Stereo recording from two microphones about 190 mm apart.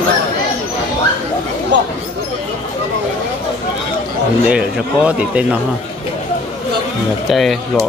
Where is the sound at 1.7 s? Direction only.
70° right (ahead or behind).